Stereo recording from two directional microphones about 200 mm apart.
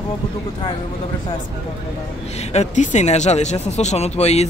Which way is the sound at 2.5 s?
35° left (ahead or behind).